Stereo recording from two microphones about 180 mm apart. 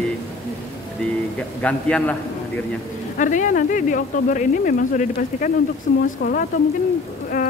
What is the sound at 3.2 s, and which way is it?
Speech, 45° left (ahead or behind).